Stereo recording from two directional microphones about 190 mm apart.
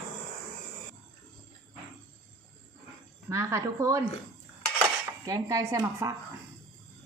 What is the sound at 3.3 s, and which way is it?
Speech, 15° right (ahead or behind).